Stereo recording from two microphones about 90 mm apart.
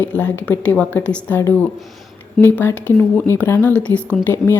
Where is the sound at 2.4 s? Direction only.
25° left (ahead or behind).